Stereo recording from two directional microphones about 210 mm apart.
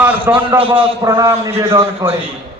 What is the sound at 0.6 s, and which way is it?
Speech, 25° right (ahead or behind).